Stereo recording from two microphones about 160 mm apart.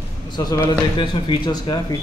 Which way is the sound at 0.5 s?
25° left (ahead or behind).